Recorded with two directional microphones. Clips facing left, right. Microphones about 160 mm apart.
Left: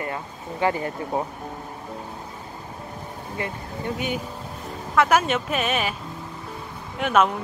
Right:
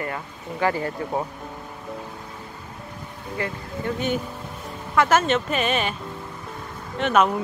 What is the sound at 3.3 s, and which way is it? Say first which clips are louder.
Speech: right 2 dB; 20° left (ahead or behind).